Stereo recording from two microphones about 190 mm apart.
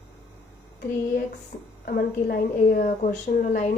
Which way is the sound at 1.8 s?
55° left (ahead or behind).